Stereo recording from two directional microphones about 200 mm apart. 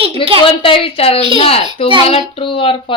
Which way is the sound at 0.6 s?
25° left (ahead or behind).